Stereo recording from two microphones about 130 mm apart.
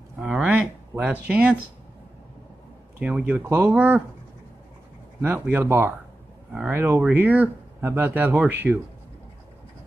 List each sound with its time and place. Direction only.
0.2 s a sound: 5° right (ahead or behind)
1.2 s speech: 10° right (ahead or behind)
3.0 s speech: 10° right (ahead or behind)
5.2 s speech: 15° right (ahead or behind)
8.7 s speech: 5° right (ahead or behind)